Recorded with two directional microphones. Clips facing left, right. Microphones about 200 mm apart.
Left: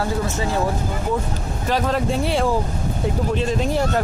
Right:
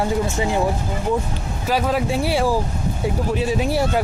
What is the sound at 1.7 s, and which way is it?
Speech, 5° right (ahead or behind).